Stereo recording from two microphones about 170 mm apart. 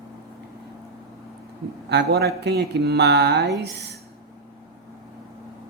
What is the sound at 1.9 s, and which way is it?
Speech, 70° right (ahead or behind).